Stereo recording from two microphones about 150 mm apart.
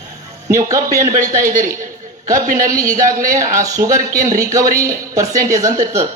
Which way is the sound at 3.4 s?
20° right (ahead or behind).